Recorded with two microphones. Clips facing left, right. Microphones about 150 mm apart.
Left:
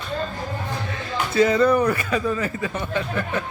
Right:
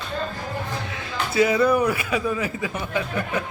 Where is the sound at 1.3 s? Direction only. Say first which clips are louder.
Left 1 dB; 5° right (ahead or behind).